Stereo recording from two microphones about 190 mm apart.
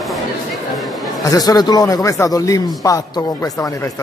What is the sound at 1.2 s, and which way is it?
Speech, 20° left (ahead or behind).